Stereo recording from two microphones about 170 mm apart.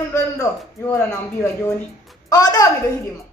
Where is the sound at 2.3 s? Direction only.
20° left (ahead or behind).